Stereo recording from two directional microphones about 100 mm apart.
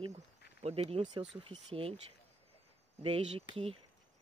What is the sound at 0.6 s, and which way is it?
Speech, 90° right.